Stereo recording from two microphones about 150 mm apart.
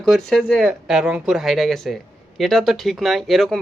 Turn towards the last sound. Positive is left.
turn(degrees=0)  # may be behind; listen again after turning